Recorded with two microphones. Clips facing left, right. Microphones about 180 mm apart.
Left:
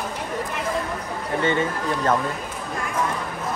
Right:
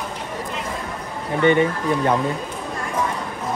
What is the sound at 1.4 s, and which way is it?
Speech, 15° right (ahead or behind).